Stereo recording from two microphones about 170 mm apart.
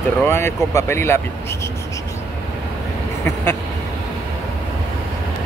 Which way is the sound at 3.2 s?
15° left (ahead or behind).